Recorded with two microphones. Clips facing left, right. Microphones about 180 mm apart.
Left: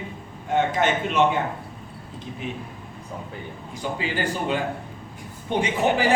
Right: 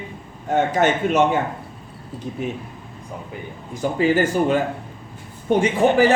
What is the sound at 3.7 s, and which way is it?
A man's voice, 45° right (ahead or behind).